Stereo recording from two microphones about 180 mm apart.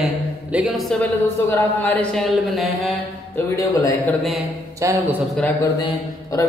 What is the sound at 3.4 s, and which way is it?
Speech, 15° left (ahead or behind).